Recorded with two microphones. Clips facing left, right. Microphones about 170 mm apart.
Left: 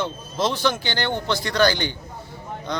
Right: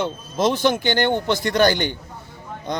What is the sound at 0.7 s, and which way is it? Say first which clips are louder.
Speech: right 7 dB; 50° right (ahead or behind).